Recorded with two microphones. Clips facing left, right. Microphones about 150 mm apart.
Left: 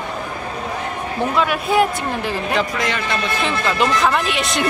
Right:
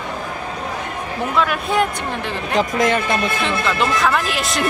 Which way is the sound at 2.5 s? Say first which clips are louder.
Right 6 dB; 45° right (ahead or behind).